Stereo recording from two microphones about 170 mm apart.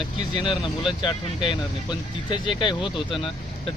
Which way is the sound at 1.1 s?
30° left (ahead or behind).